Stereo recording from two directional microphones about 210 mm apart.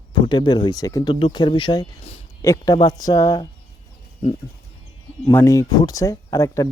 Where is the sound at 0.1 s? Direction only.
20° left (ahead or behind).